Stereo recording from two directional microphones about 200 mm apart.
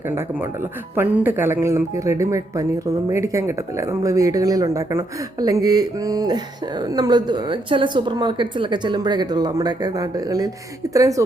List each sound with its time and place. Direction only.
0.1 s speech: 10° right (ahead or behind)